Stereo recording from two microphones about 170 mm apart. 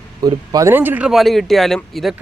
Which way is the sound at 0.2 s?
25° right (ahead or behind).